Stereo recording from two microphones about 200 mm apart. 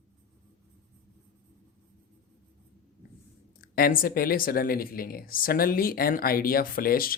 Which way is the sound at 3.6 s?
50° left (ahead or behind).